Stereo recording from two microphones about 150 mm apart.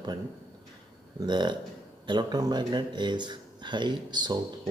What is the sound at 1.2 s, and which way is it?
Speech, 30° right (ahead or behind).